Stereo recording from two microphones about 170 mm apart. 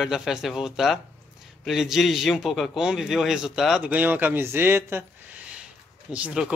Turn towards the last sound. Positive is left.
turn(degrees=-5)  # may be behind; listen again after turning